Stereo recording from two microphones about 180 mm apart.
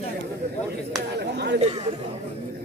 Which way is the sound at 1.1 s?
70° right (ahead or behind).